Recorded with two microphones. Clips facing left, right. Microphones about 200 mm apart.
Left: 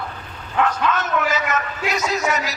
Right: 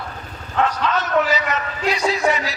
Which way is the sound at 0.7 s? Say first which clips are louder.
Even; 50° left (ahead or behind).